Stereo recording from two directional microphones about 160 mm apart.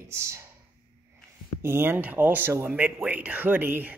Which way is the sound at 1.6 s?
15° right (ahead or behind).